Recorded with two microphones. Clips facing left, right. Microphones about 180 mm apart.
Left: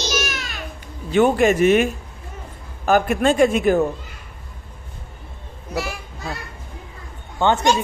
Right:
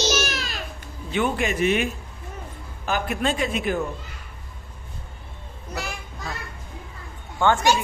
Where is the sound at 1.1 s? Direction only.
45° left (ahead or behind).